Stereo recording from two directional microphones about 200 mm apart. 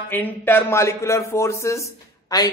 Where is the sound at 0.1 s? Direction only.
10° left (ahead or behind).